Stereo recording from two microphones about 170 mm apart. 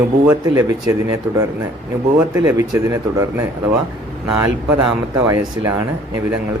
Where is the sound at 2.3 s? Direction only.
20° right (ahead or behind).